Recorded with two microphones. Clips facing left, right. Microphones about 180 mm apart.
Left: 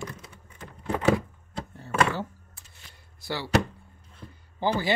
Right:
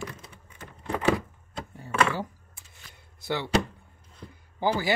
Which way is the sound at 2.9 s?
20° right (ahead or behind).